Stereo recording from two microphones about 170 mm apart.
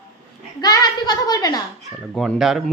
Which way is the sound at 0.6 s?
20° left (ahead or behind).